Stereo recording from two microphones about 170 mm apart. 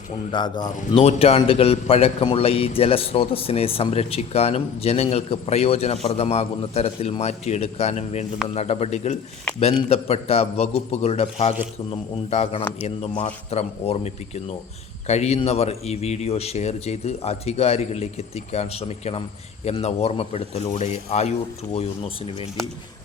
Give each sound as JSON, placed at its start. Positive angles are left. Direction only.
{"t": 0.3, "sound": "a man's voice", "side_deg": 25}